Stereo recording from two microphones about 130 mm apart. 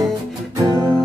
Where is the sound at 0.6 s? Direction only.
25° right (ahead or behind).